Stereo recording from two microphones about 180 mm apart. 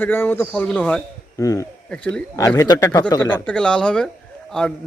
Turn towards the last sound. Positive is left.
turn(degrees=5)  # may be behind; listen again after turning